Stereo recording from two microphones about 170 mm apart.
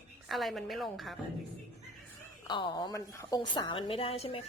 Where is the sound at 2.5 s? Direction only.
25° left (ahead or behind).